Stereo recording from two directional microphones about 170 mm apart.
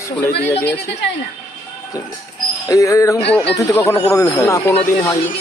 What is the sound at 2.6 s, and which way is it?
Speech, 20° left (ahead or behind).